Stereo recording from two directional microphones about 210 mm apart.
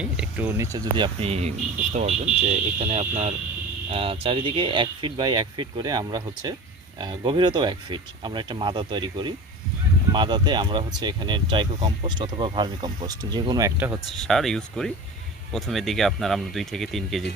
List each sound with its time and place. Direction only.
0.0 s speech: 5° right (ahead or behind)
14.3 s speech: centre (ahead or behind)